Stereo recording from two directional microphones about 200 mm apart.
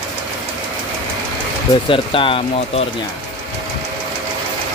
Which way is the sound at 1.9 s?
25° left (ahead or behind).